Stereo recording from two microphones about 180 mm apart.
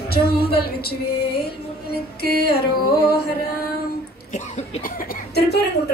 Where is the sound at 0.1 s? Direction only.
60° left (ahead or behind).